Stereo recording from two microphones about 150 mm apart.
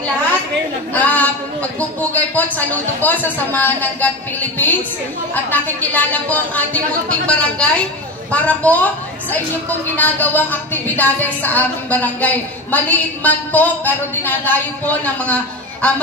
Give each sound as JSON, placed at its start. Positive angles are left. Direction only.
{"t": 0.9, "sound": "a woman's voice", "side_deg": 10}